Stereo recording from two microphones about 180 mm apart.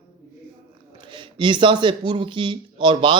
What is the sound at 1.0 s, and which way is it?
A man's voice, 25° right (ahead or behind).